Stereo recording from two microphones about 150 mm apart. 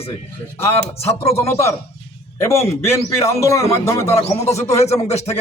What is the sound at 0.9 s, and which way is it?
Speech, 40° left (ahead or behind).